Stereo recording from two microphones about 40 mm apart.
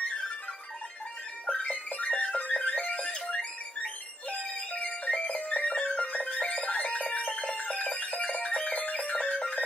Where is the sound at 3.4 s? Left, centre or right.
Left.